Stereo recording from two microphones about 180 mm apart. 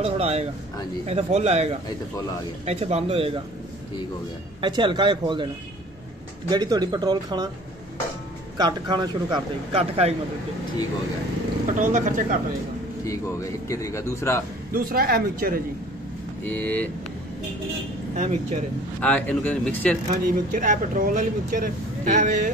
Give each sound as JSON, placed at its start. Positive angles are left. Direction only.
{"t": 0.0, "sound": "speech", "side_deg": -35}
{"t": 4.6, "sound": "a man's voice", "side_deg": -25}
{"t": 6.5, "sound": "a man's voice", "side_deg": -25}
{"t": 8.5, "sound": "a man's voice", "side_deg": -25}
{"t": 11.6, "sound": "speech", "side_deg": -45}
{"t": 13.0, "sound": "a man's voice", "side_deg": 15}
{"t": 14.7, "sound": "speech", "side_deg": -55}
{"t": 16.4, "sound": "a man's voice", "side_deg": 10}
{"t": 18.1, "sound": "speech", "side_deg": -40}
{"t": 18.9, "sound": "a man's voice", "side_deg": 10}
{"t": 20.5, "sound": "speech", "side_deg": -45}